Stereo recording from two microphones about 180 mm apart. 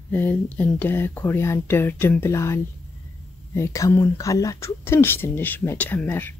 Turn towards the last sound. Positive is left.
turn(degrees=10)  # may be behind; listen again after turning